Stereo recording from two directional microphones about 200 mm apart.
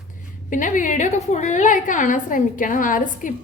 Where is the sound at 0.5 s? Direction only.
40° left (ahead or behind).